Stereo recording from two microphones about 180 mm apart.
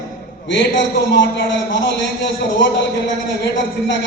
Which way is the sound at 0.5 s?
75° left (ahead or behind).